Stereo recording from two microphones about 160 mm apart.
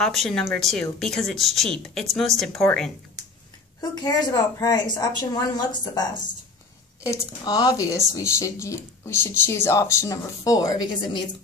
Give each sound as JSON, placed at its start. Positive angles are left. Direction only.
{"t": 0.0, "sound": "speech", "side_deg": 0}
{"t": 3.9, "sound": "speech", "side_deg": 25}